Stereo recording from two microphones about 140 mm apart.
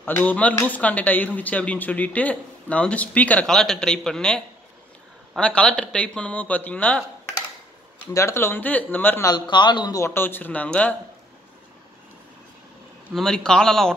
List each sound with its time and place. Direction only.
0.0 s speech: 15° left (ahead or behind)
8.1 s speech: 20° left (ahead or behind)
9.3 s speech: 35° left (ahead or behind); by 11.0 s 10° left (ahead or behind)
13.1 s a man's voice: 5° left (ahead or behind)